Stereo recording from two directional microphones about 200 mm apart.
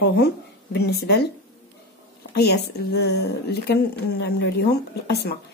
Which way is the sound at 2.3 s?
55° left (ahead or behind).